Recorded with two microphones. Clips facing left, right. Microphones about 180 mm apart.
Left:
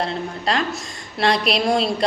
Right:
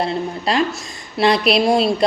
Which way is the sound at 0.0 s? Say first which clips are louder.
Right 3 dB; 5° right (ahead or behind).